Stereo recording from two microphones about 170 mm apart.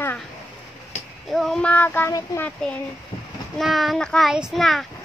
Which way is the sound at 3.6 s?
Centre (ahead or behind).